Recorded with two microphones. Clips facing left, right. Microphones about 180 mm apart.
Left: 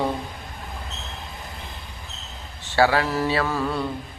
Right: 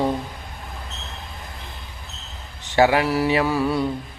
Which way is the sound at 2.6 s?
15° right (ahead or behind).